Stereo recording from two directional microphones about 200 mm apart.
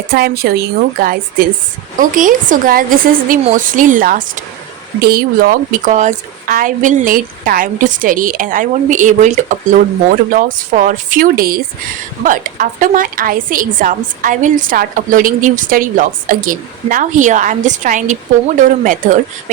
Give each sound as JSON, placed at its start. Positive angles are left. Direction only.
{"t": 0.1, "sound": "a woman's voice", "side_deg": -50}